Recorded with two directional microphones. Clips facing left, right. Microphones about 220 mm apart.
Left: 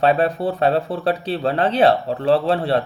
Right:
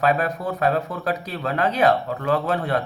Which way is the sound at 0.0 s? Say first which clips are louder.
Left 4 dB; 30° left (ahead or behind).